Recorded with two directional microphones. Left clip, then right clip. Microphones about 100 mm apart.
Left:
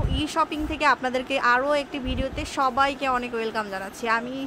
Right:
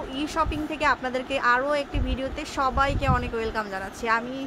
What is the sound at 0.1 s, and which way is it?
A woman's voice, 25° left (ahead or behind).